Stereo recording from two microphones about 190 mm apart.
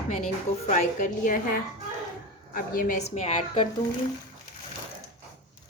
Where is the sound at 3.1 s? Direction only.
35° left (ahead or behind).